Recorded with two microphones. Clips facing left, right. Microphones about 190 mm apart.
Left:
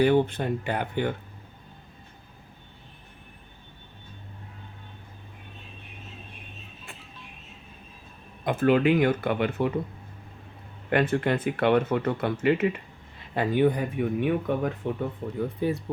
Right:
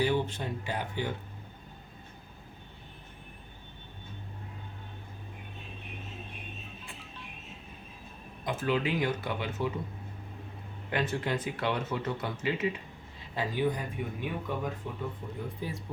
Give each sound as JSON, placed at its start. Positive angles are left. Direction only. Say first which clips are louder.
{"t": 0.0, "sound": "speech", "louder": "left 8 dB", "side_deg": 60}
{"t": 8.4, "sound": "speech", "louder": "left 9 dB", "side_deg": 55}
{"t": 10.8, "sound": "speech", "louder": "left 8 dB", "side_deg": 60}